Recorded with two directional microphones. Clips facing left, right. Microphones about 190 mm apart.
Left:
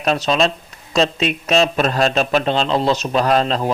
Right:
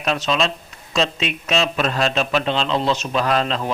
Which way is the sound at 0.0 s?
40° left (ahead or behind).